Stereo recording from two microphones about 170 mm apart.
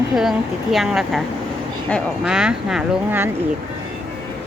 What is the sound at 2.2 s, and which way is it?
Speech, 5° right (ahead or behind).